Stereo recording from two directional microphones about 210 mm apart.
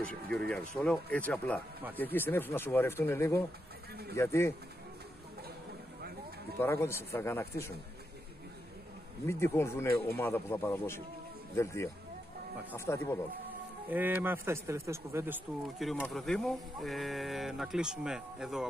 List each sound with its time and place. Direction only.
0.0 s speech: 5° left (ahead or behind)
3.9 s speech: 50° right (ahead or behind)
4.2 s speech: 10° left (ahead or behind)
6.6 s speech: 10° left (ahead or behind)
9.2 s speech: 10° left (ahead or behind)
13.8 s speech: 10° right (ahead or behind)